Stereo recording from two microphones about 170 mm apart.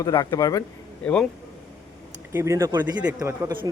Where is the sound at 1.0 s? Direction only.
5° left (ahead or behind).